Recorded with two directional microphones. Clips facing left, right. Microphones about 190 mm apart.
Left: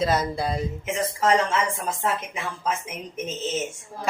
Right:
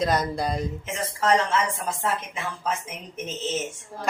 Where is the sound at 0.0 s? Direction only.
5° left (ahead or behind).